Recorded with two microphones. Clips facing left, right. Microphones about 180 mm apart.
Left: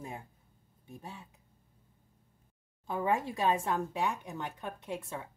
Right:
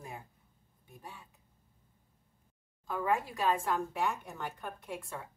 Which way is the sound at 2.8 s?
25° left (ahead or behind).